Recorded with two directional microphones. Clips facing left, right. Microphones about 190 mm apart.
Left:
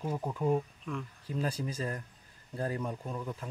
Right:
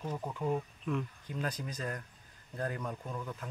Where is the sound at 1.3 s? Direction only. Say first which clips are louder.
Left 7 dB; 30° left (ahead or behind).